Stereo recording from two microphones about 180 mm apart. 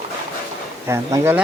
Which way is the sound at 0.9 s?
15° right (ahead or behind).